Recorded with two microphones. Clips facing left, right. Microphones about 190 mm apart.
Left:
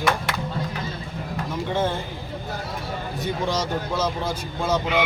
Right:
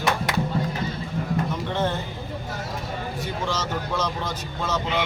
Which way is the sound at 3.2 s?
15° left (ahead or behind).